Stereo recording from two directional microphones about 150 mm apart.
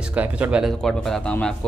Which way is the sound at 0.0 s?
10° right (ahead or behind).